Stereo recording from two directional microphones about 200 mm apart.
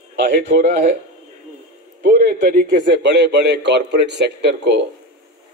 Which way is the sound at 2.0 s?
50° right (ahead or behind).